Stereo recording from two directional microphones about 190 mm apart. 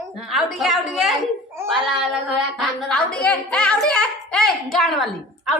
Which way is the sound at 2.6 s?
5° left (ahead or behind).